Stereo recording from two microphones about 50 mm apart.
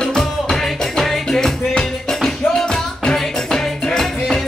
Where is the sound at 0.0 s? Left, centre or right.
Centre.